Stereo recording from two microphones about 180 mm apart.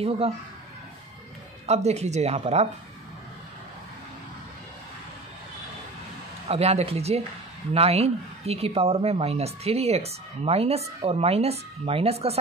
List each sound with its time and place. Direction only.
0.0 s speech: 35° right (ahead or behind)
1.7 s speech: 35° right (ahead or behind)
6.5 s speech: 35° right (ahead or behind)